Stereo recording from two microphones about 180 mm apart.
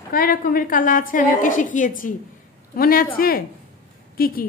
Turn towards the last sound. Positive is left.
turn(degrees=55)  # may be behind; listen again after turning